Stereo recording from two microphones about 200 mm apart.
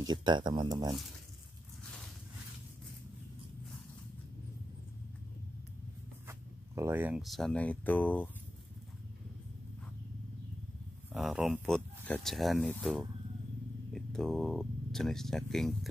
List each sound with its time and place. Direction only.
0.0 s speech: 20° right (ahead or behind)
6.2 s speech: 15° right (ahead or behind); by 8.3 s 10° left (ahead or behind)
11.1 s speech: centre (ahead or behind)